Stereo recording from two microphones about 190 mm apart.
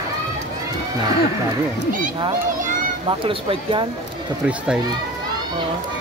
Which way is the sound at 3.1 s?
25° right (ahead or behind).